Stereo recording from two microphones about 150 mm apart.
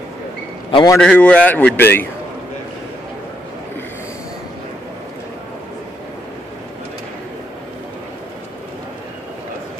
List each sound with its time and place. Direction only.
0.7 s a man's voice: 35° left (ahead or behind)
0.9 s a man's voice: 5° left (ahead or behind)